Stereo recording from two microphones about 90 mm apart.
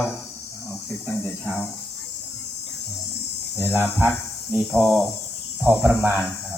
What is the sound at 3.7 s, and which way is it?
Speech, 20° right (ahead or behind).